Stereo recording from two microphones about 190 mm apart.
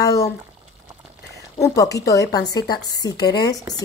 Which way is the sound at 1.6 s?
15° left (ahead or behind).